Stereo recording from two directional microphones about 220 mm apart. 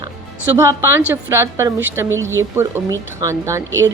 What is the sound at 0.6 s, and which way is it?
A woman's voice, 15° right (ahead or behind).